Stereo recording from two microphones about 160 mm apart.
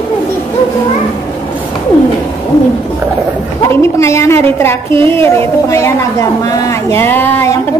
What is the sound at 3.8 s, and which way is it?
A woman's voice, 20° left (ahead or behind).